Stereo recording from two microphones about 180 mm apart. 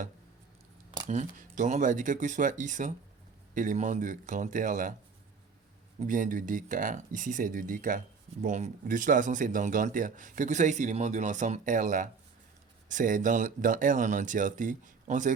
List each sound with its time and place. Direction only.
0.9 s a sound: 25° right (ahead or behind)
1.1 s speech: 45° right (ahead or behind)
6.0 s speech: 45° right (ahead or behind)